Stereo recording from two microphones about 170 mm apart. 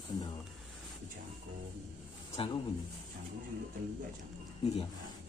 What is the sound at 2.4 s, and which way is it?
Speech, 30° left (ahead or behind).